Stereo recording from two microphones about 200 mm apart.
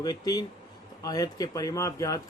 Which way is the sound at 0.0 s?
20° left (ahead or behind).